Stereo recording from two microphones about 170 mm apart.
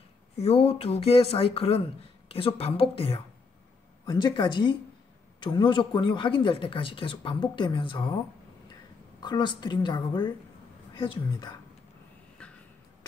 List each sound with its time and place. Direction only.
0.4 s a man's voice: 35° left (ahead or behind)
9.2 s a man's voice: 25° left (ahead or behind)